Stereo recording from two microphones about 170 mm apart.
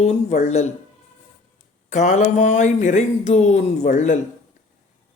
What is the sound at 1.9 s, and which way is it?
Speech, 45° left (ahead or behind).